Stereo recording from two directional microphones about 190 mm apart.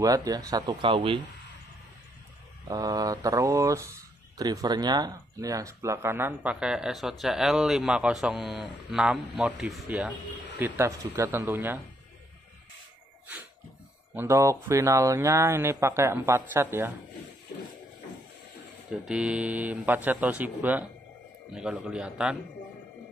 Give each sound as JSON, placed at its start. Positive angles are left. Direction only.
{"t": 0.0, "sound": "speech", "side_deg": -20}
{"t": 2.7, "sound": "speech", "side_deg": -20}
{"t": 14.1, "sound": "speech", "side_deg": -15}
{"t": 18.9, "sound": "speech", "side_deg": -5}